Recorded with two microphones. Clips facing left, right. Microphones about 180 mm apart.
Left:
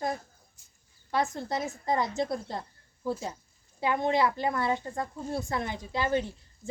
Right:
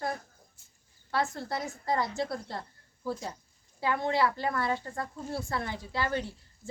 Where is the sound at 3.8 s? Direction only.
20° left (ahead or behind).